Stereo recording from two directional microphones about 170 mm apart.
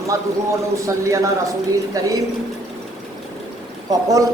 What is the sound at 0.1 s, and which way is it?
A man's voice, 20° right (ahead or behind).